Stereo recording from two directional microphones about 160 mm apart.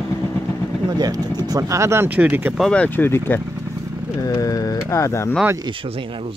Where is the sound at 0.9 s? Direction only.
25° right (ahead or behind).